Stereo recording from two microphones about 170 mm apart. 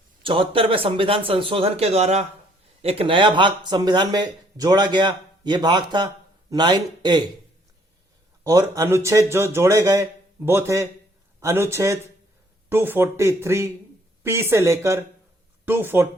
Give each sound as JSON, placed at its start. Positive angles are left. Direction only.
{"t": 0.2, "sound": "speech", "side_deg": -30}
{"t": 8.4, "sound": "speech", "side_deg": -20}